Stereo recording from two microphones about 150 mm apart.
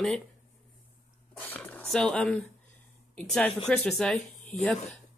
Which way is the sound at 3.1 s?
5° left (ahead or behind).